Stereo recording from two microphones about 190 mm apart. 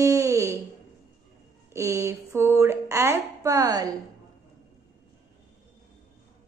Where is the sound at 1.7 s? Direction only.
15° right (ahead or behind).